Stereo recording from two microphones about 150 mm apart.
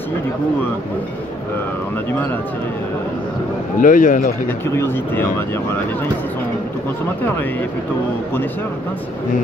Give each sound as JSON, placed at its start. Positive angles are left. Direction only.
{"t": 3.8, "sound": "speech", "side_deg": 60}
{"t": 4.6, "sound": "speech", "side_deg": 15}